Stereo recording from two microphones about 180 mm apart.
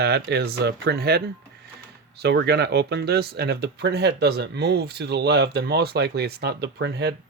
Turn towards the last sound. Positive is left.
turn(degrees=-65)  # may be behind; listen again after turning